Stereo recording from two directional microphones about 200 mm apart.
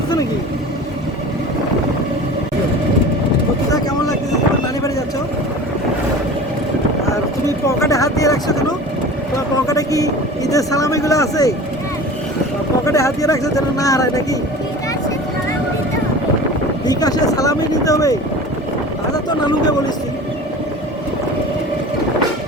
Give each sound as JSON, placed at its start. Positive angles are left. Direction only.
{"t": 7.7, "sound": "vehicle", "side_deg": 15}
{"t": 9.6, "sound": "speech", "side_deg": 15}
{"t": 12.8, "sound": "speech", "side_deg": 15}
{"t": 16.8, "sound": "speech", "side_deg": 20}